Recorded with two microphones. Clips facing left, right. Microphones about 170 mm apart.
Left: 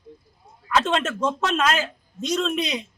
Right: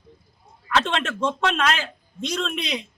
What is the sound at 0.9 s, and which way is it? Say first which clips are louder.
A man's voice: left 2 dB; centre (ahead or behind).